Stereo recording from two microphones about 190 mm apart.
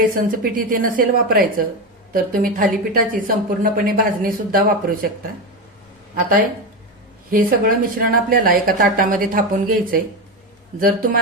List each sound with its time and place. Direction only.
0.1 s speech: 45° right (ahead or behind)